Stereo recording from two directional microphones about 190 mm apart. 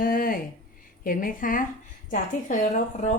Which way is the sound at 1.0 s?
45° left (ahead or behind).